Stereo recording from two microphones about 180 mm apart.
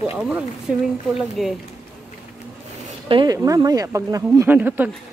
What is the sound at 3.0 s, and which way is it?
Speech, 25° right (ahead or behind).